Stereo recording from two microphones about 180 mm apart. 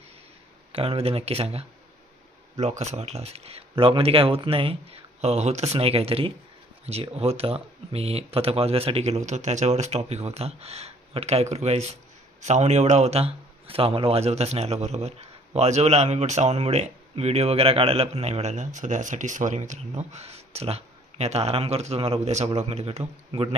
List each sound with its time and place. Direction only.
0.7 s speech: 30° right (ahead or behind)